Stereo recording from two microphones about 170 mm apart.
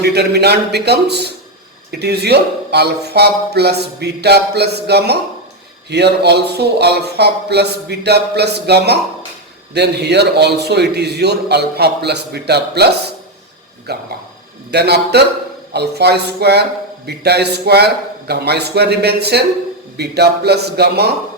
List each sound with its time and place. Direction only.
0.0 s speech: 75° right (ahead or behind)